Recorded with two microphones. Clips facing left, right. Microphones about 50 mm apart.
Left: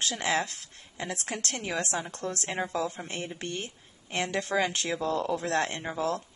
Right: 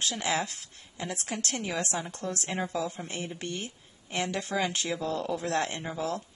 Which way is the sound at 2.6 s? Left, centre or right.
Left.